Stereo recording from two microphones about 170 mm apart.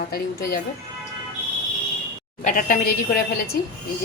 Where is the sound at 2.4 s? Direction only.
55° left (ahead or behind).